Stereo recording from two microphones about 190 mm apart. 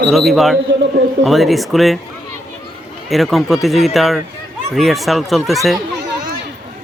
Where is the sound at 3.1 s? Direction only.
Centre (ahead or behind).